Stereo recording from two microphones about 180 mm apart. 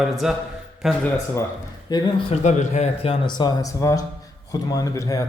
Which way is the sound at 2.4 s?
40° left (ahead or behind).